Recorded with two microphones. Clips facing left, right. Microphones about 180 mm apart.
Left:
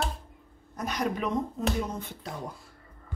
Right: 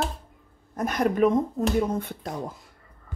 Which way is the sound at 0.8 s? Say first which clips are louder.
Right 8 dB; 50° right (ahead or behind).